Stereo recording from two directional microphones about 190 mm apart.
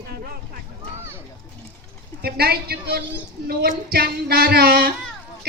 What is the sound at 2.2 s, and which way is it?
A woman's voice, 55° right (ahead or behind).